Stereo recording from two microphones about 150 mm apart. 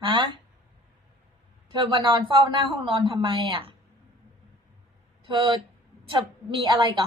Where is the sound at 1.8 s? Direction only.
35° right (ahead or behind).